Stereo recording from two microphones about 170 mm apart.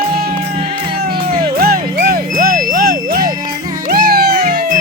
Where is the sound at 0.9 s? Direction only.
65° right (ahead or behind).